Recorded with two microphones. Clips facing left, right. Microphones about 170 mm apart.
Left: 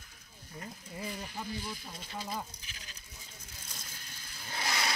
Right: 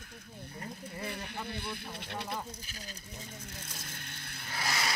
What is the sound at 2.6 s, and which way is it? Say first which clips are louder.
Speech: right 7 dB; 40° right (ahead or behind).